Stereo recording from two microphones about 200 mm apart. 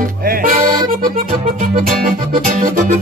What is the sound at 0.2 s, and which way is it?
Music, 45° right (ahead or behind).